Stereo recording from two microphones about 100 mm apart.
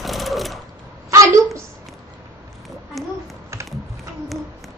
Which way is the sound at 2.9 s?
Centre (ahead or behind).